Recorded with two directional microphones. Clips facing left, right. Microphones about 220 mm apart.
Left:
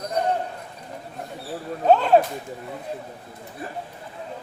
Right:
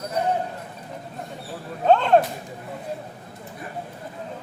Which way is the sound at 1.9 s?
5° left (ahead or behind).